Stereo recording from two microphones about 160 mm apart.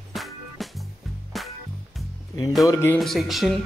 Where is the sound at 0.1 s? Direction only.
Centre (ahead or behind).